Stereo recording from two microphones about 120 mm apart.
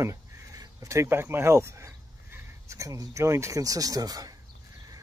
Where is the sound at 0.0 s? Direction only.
25° right (ahead or behind).